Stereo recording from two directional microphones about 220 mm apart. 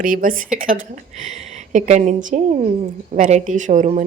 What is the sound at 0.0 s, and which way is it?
A woman's voice, 40° right (ahead or behind).